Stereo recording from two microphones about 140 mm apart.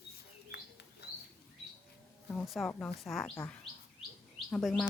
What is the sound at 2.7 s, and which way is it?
Speech, 10° left (ahead or behind).